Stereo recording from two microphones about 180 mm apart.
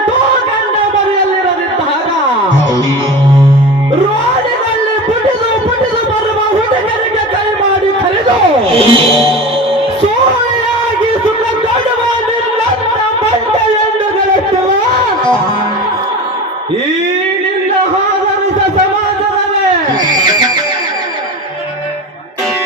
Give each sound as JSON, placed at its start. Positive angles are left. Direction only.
{"t": 8.7, "sound": "music", "side_deg": -30}